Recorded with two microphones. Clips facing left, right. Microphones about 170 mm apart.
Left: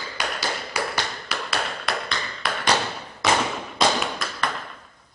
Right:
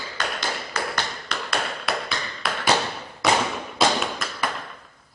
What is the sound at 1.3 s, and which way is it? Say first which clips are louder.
Tap: right 1 dB; centre (ahead or behind).